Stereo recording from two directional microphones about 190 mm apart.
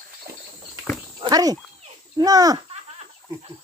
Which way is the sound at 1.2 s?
20° right (ahead or behind).